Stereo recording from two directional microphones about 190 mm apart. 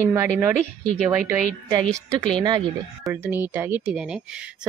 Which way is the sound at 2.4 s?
25° right (ahead or behind).